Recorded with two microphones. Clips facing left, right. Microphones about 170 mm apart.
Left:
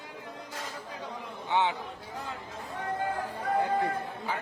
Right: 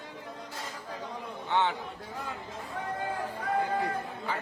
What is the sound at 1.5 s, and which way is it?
Speech, 10° left (ahead or behind).